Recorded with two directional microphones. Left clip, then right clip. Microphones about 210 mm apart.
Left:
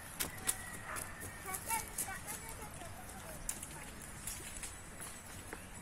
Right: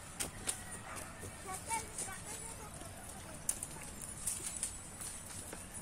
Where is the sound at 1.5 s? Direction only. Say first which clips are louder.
Even; 50° left (ahead or behind).